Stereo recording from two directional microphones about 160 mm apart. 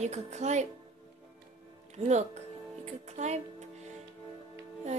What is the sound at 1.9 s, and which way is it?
Speech, 45° right (ahead or behind).